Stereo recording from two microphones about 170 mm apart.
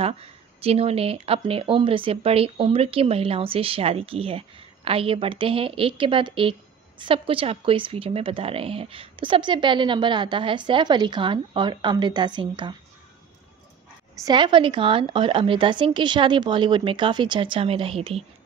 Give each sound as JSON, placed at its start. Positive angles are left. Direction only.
{"t": 0.0, "sound": "speech", "side_deg": -35}
{"t": 14.2, "sound": "speech", "side_deg": -25}